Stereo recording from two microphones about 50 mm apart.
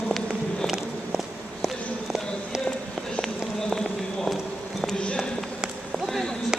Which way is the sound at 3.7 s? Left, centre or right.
Centre.